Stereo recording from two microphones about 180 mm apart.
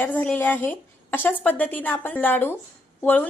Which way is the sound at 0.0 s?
10° left (ahead or behind).